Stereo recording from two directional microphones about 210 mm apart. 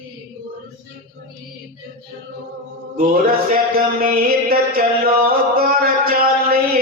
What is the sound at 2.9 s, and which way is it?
Mantra, 45° right (ahead or behind).